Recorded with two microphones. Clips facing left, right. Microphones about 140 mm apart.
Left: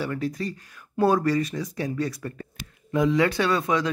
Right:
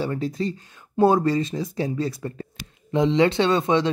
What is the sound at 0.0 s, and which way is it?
Speech, 25° right (ahead or behind).